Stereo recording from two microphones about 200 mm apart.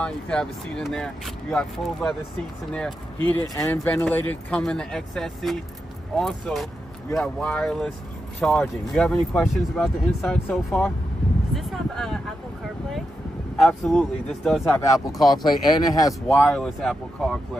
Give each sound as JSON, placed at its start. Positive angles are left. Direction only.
{"t": 0.0, "sound": "speech", "side_deg": 5}
{"t": 11.5, "sound": "a sound", "side_deg": 0}
{"t": 13.6, "sound": "speech", "side_deg": 5}
{"t": 14.6, "sound": "speech", "side_deg": 15}
{"t": 16.4, "sound": "speech", "side_deg": 0}